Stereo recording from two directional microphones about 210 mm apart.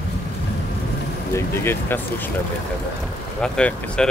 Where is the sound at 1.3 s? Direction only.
10° left (ahead or behind).